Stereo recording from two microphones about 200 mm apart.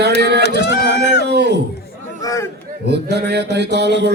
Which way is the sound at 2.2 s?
15° left (ahead or behind).